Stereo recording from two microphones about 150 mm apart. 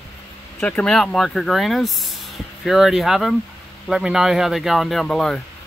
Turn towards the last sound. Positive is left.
turn(degrees=0)  # may be behind; listen again after turning